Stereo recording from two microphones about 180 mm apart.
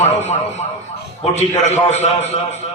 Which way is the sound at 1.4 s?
40° left (ahead or behind).